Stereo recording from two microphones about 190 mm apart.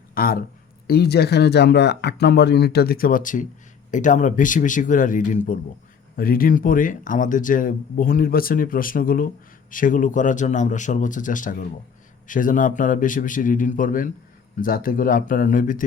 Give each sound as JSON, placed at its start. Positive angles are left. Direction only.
{"t": 0.1, "sound": "a man's voice", "side_deg": 50}